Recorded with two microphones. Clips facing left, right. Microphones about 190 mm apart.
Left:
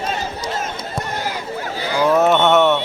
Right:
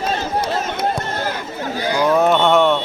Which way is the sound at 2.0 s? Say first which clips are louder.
Left 1 dB; 5° left (ahead or behind).